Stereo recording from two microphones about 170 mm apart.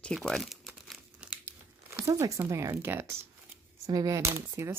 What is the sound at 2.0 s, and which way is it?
Speech, 15° right (ahead or behind).